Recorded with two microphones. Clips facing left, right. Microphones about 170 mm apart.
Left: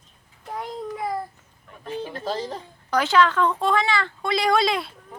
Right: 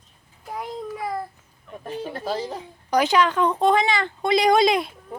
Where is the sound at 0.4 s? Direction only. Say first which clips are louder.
Even; 5° right (ahead or behind).